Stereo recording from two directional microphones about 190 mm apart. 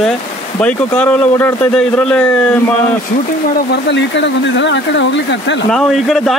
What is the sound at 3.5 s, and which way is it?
Speech, 65° left (ahead or behind).